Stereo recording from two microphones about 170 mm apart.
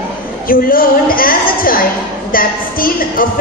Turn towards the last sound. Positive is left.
turn(degrees=55)  # may be behind; listen again after turning